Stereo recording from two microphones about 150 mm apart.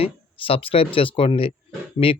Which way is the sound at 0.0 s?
40° left (ahead or behind).